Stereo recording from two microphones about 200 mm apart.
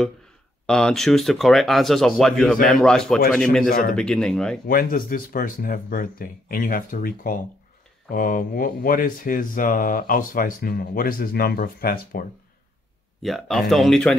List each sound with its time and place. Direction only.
0.7 s speech: 5° left (ahead or behind)
4.6 s speech: 45° left (ahead or behind)
13.2 s speech: centre (ahead or behind)